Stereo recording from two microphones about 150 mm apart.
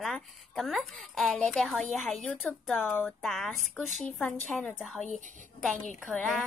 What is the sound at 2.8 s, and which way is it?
Speech, 15° left (ahead or behind).